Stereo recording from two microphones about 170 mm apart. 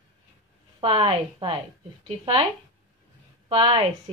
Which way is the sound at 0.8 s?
30° right (ahead or behind).